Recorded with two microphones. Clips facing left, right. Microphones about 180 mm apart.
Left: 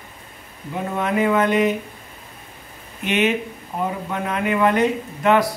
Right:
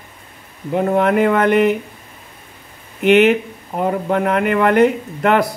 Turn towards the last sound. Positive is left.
turn(degrees=-60)  # may be behind; listen again after turning